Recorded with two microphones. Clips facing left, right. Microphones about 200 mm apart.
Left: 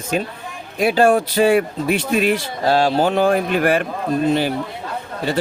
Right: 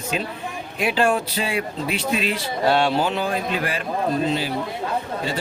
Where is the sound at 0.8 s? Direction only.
40° left (ahead or behind).